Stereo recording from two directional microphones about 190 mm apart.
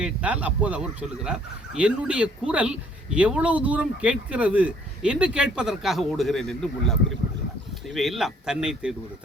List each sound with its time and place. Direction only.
0.0 s speech: 5° right (ahead or behind)
7.9 s speech: centre (ahead or behind)